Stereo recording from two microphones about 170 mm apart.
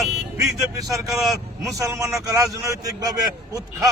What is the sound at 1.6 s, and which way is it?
A man's voice, 20° right (ahead or behind).